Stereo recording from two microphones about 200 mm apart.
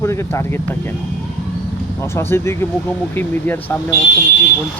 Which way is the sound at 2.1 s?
10° left (ahead or behind).